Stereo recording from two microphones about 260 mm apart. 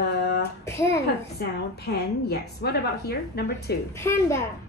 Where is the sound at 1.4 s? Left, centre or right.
Left.